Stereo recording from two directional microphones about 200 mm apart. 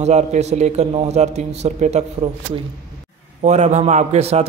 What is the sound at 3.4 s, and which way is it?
A man's voice, 35° right (ahead or behind).